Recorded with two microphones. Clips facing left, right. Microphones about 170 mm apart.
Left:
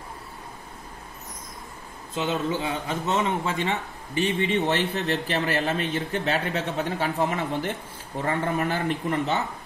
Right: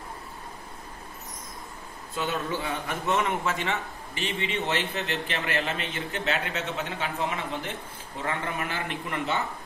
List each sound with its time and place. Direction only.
2.1 s a man's voice: 20° left (ahead or behind)
4.4 s a man's voice: 40° left (ahead or behind)
7.2 s speech: 50° left (ahead or behind)